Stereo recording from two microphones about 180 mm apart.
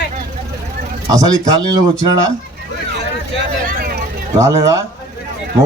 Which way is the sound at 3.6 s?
55° right (ahead or behind).